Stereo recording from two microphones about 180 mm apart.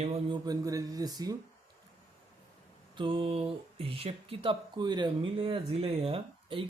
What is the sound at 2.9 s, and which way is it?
Speech, 30° right (ahead or behind).